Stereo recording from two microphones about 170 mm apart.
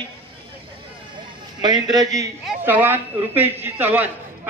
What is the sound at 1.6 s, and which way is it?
Speech, 25° right (ahead or behind).